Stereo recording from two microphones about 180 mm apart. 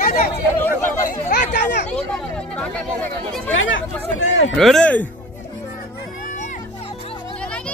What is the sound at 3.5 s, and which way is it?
Speech, 90° left.